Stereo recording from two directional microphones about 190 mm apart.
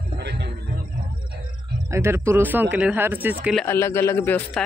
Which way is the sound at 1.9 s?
15° right (ahead or behind).